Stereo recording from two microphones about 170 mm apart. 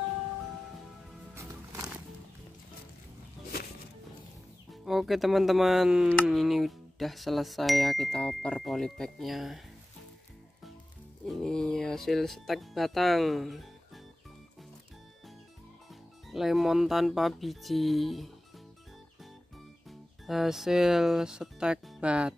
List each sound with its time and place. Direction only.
1.3 s music: 15° right (ahead or behind)
4.8 s speech: centre (ahead or behind)
11.2 s speech: centre (ahead or behind)
15.9 s speech: centre (ahead or behind)
19.9 s speech: centre (ahead or behind)